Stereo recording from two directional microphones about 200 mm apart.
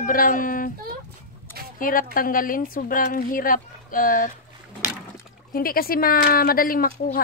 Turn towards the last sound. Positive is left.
turn(degrees=45)  # may be behind; listen again after turning